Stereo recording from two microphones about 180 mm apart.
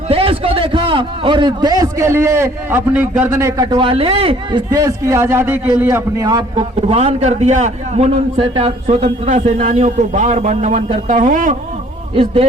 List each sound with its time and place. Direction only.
0.1 s a man's voice: 30° right (ahead or behind)
12.1 s a man's voice: 30° right (ahead or behind)